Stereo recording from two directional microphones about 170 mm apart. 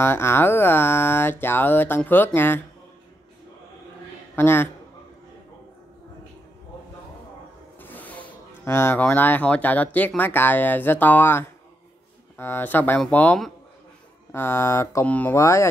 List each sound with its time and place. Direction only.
0.0 s speech: 15° left (ahead or behind)
4.4 s speech: 10° left (ahead or behind)
7.8 s speech: 10° left (ahead or behind)